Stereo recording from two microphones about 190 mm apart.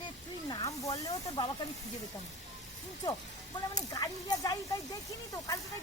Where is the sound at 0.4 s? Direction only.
20° left (ahead or behind).